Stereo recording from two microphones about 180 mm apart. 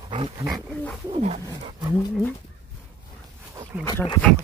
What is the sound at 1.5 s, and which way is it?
Speech, 20° right (ahead or behind).